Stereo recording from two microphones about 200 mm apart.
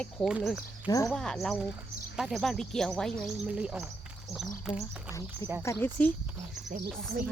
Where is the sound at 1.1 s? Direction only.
Centre (ahead or behind).